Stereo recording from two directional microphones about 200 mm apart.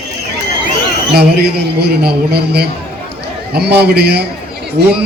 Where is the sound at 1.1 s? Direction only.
55° right (ahead or behind).